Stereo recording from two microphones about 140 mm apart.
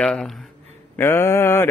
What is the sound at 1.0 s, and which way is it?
Speech, 15° left (ahead or behind).